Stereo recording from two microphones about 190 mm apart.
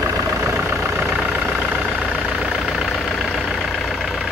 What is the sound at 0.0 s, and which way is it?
Vehicle, 15° right (ahead or behind).